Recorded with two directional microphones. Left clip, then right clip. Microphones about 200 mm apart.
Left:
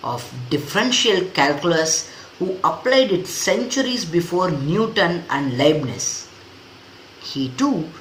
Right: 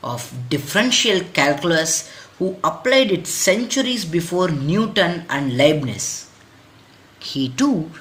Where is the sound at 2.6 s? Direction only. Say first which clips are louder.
Even; 45° right (ahead or behind).